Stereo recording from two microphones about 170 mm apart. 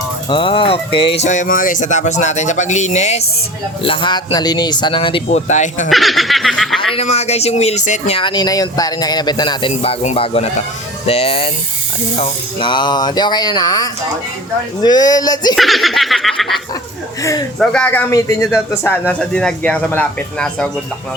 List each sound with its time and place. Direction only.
0.3 s speech: 30° left (ahead or behind)
3.8 s speech: 30° left (ahead or behind)
5.5 s speech: 45° left (ahead or behind)
5.9 s speech: centre (ahead or behind)
6.9 s speech: 40° left (ahead or behind); by 15.5 s 20° left (ahead or behind)
15.5 s laughter: centre (ahead or behind)
17.6 s speech: 5° left (ahead or behind)